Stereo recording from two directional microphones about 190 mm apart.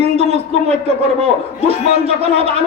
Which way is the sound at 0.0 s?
35° right (ahead or behind).